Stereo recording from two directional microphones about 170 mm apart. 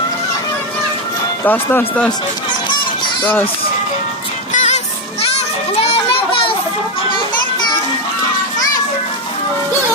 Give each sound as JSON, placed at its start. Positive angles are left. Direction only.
{"t": 1.5, "sound": "speech", "side_deg": 10}
{"t": 4.5, "sound": "music", "side_deg": 45}
{"t": 5.8, "sound": "children playing", "side_deg": 35}